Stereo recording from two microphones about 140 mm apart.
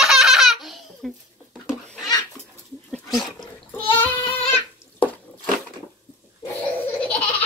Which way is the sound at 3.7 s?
15° left (ahead or behind).